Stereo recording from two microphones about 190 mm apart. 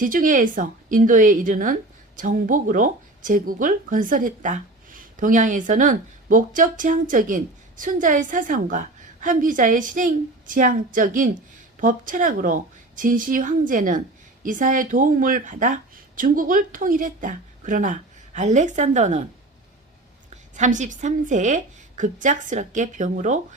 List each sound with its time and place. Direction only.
0.0 s speech: 45° right (ahead or behind)
20.3 s a woman's voice: 40° right (ahead or behind)